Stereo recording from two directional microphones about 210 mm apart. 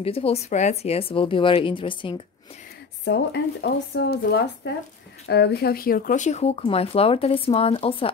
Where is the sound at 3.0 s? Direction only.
55° left (ahead or behind); by 8.0 s 25° left (ahead or behind).